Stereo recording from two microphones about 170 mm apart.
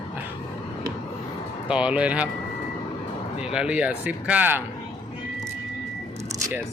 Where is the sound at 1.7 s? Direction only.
5° right (ahead or behind).